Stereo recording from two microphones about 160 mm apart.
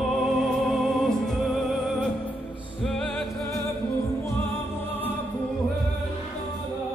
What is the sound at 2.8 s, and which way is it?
Music, centre (ahead or behind).